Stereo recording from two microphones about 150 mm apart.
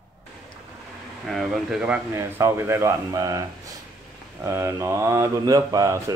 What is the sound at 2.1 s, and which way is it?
Speech, 20° right (ahead or behind).